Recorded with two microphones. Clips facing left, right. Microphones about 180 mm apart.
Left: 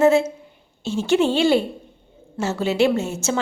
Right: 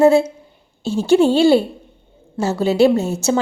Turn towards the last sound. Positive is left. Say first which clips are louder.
# right 5 dB
turn(degrees=-35)  # may be behind; listen again after turning